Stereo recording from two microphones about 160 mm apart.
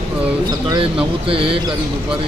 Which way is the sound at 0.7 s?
35° right (ahead or behind).